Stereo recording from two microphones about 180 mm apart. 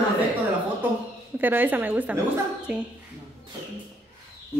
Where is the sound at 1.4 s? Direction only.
10° right (ahead or behind).